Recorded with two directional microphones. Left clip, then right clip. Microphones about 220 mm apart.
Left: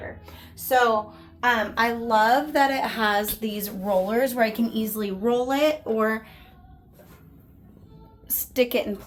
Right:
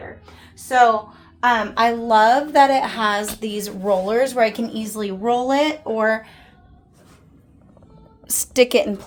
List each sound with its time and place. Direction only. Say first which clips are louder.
1.4 s a woman's voice: right 5 dB; 30° right (ahead or behind)
8.3 s a woman's voice: right 7 dB; 40° right (ahead or behind)